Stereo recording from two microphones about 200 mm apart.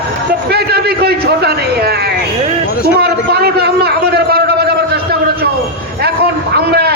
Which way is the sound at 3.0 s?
55° right (ahead or behind).